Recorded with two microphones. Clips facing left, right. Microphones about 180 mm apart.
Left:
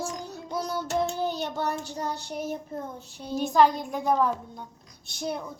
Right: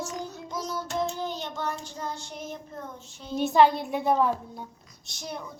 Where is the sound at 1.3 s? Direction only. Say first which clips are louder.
Left 3 dB; 35° left (ahead or behind).